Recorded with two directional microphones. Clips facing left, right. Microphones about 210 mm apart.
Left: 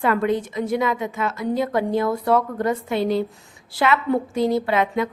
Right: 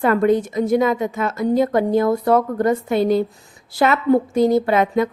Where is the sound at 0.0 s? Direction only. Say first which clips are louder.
Right 5 dB; 45° right (ahead or behind).